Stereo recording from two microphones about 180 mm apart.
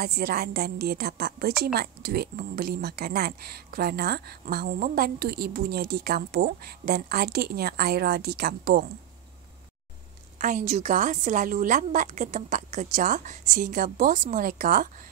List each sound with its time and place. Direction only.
0.0 s a woman's voice: 60° right (ahead or behind)
10.7 s a woman's voice: 40° right (ahead or behind)